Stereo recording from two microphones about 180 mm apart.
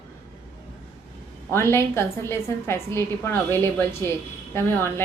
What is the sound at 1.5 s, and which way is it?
A woman's voice, 15° left (ahead or behind).